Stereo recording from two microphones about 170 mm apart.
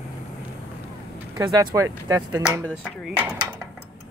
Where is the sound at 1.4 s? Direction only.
20° right (ahead or behind).